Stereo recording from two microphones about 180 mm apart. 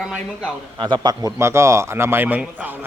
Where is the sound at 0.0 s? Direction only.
5° right (ahead or behind).